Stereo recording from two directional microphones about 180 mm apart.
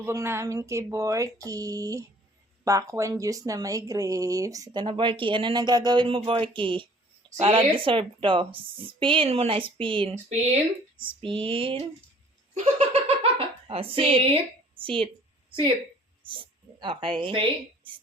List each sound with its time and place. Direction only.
0.0 s a woman's voice: 15° right (ahead or behind); by 11.8 s 30° right (ahead or behind)
12.5 s giggle: 40° right (ahead or behind)
14.8 s a sound: 30° right (ahead or behind)
16.3 s speech: 30° right (ahead or behind)